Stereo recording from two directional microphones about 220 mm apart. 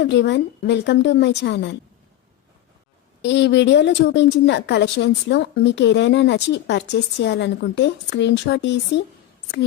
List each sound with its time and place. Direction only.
0.0 s a woman's voice: 50° left (ahead or behind)
3.2 s a woman's voice: 55° left (ahead or behind)